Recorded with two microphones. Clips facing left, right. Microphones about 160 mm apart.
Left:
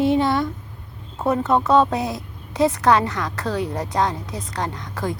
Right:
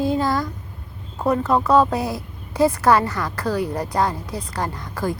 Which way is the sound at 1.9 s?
20° left (ahead or behind).